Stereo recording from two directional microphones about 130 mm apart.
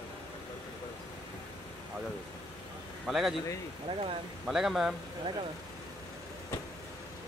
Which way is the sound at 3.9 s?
45° right (ahead or behind).